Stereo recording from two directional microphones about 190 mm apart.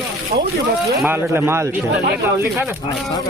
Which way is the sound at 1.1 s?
15° right (ahead or behind).